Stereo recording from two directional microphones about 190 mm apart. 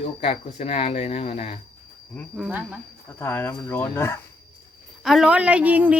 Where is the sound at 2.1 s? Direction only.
Centre (ahead or behind).